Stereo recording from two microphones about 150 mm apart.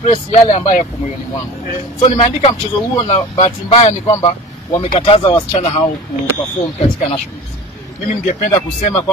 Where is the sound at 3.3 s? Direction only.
45° left (ahead or behind).